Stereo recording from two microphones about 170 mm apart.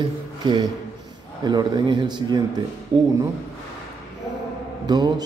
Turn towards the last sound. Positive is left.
turn(degrees=-25)  # may be behind; listen again after turning